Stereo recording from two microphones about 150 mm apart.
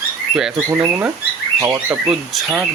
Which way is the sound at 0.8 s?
20° right (ahead or behind).